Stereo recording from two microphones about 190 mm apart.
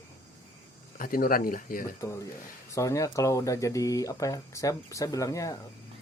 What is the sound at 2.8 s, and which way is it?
Speech, 15° left (ahead or behind).